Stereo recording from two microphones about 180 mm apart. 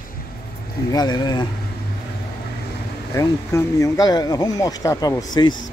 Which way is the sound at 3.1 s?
15° left (ahead or behind).